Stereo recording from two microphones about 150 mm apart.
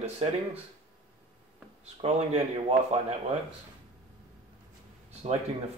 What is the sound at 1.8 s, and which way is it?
Speech, 45° right (ahead or behind).